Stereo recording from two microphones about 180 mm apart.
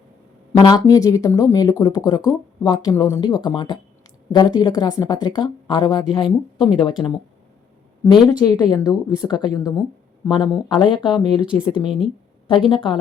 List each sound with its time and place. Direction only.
0.5 s a woman's voice: 20° left (ahead or behind)
8.0 s a woman's voice: 20° left (ahead or behind)
11.9 s a woman's voice: centre (ahead or behind)
12.5 s a woman's voice: 25° left (ahead or behind)